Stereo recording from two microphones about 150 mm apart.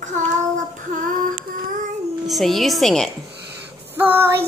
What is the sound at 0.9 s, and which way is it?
Female singing, 65° right (ahead or behind).